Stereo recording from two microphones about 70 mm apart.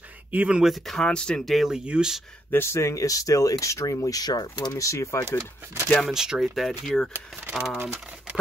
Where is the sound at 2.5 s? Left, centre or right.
Left.